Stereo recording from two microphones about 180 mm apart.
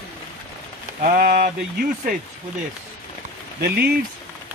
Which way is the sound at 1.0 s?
50° right (ahead or behind).